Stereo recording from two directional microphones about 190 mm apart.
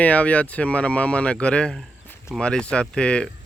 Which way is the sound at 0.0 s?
5° left (ahead or behind).